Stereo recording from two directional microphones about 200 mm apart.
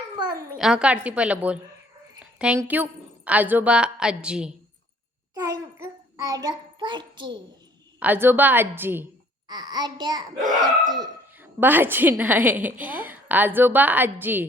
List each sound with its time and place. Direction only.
0.6 s a woman's voice: 5° right (ahead or behind)
5.3 s a sound: 15° right (ahead or behind)
7.9 s a woman's voice: 10° right (ahead or behind)
9.5 s a child's voice: 20° right (ahead or behind)
11.3 s a woman's voice: 10° right (ahead or behind)